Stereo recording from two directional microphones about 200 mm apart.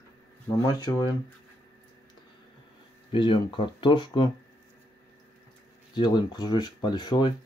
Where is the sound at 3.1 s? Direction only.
25° left (ahead or behind).